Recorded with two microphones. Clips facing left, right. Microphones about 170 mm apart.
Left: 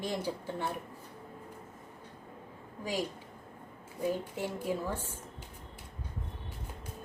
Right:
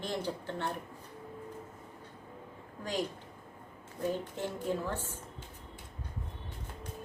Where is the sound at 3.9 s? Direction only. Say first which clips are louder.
Left 1 dB; 10° left (ahead or behind).